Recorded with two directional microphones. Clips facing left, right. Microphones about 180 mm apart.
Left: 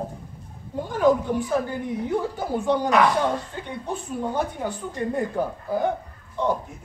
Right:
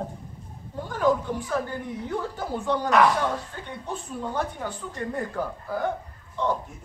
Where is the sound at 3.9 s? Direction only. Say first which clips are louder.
Left 3 dB; 15° left (ahead or behind).